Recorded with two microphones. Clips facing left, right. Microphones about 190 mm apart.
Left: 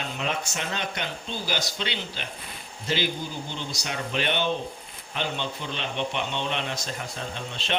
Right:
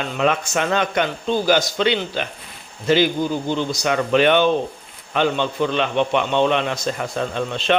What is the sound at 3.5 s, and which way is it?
A man's voice, 55° right (ahead or behind).